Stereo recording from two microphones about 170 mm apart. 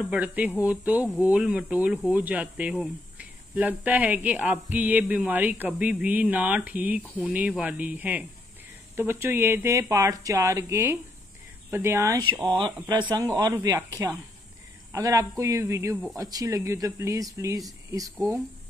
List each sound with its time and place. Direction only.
0.0 s speech: 5° right (ahead or behind)